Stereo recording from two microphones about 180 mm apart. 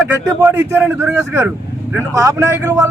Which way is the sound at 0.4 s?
10° right (ahead or behind).